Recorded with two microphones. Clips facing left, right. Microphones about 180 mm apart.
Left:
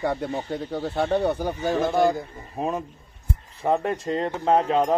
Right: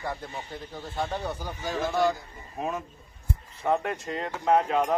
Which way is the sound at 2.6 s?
35° left (ahead or behind).